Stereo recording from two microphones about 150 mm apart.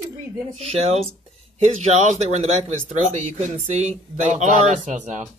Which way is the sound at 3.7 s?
50° right (ahead or behind).